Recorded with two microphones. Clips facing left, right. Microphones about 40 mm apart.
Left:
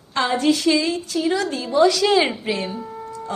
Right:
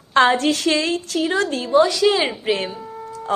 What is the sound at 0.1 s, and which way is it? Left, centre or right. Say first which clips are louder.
A woman's voice: right 4 dB; right.